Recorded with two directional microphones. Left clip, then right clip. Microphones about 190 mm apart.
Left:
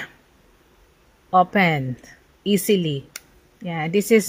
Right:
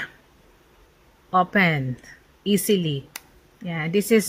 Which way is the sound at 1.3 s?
15° left (ahead or behind).